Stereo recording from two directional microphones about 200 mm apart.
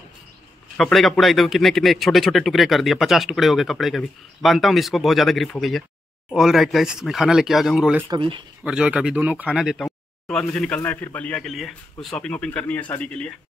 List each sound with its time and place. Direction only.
0.7 s a man's voice: centre (ahead or behind)
8.1 s speech: 25° right (ahead or behind)
8.6 s a man's voice: 5° right (ahead or behind)